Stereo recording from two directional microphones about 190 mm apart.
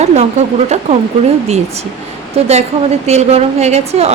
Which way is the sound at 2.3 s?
35° right (ahead or behind).